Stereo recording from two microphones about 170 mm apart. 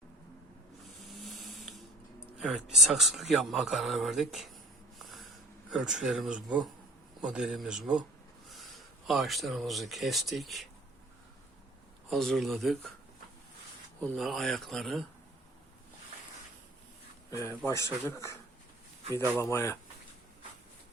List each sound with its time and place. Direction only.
0.9 s mechanisms: centre (ahead or behind)
2.4 s speech: centre (ahead or behind)
4.9 s snort: centre (ahead or behind)
5.7 s speech: 5° right (ahead or behind)
12.1 s speech: centre (ahead or behind)
14.0 s speech: centre (ahead or behind)
17.7 s speech: 15° left (ahead or behind)
19.4 s speech: 15° left (ahead or behind)